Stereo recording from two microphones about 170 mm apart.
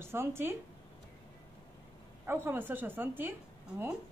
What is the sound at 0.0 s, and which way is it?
Speech, 15° right (ahead or behind).